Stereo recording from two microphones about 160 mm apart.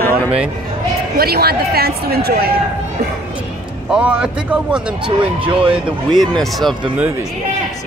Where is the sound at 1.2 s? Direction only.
75° right (ahead or behind).